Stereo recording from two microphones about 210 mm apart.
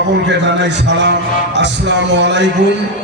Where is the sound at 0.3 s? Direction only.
55° right (ahead or behind).